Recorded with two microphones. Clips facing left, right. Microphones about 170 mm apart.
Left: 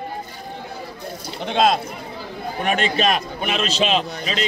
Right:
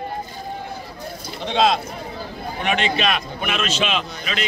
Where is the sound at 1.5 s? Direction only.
50° left (ahead or behind).